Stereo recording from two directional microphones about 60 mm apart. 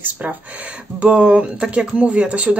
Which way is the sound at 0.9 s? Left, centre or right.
Centre.